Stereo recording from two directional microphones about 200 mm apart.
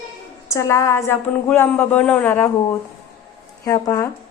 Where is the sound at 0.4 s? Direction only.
15° left (ahead or behind).